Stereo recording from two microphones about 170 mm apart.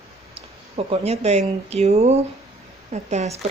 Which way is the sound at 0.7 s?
35° right (ahead or behind).